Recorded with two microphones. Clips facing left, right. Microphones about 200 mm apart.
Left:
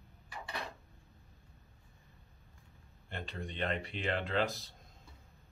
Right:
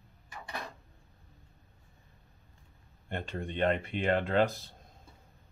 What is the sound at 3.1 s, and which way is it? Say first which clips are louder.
Speech: right 6 dB; 50° right (ahead or behind).